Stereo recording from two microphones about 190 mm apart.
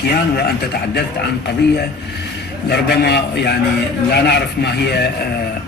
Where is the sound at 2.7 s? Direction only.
60° left (ahead or behind).